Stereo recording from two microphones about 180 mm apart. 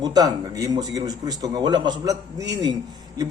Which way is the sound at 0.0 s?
20° right (ahead or behind).